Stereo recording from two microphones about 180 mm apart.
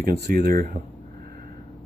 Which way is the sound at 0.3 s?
55° right (ahead or behind).